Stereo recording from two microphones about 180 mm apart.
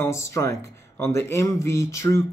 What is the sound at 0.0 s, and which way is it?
Speech, 15° left (ahead or behind).